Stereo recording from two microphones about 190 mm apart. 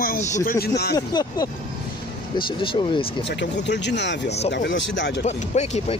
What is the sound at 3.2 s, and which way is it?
Speech, 65° left (ahead or behind).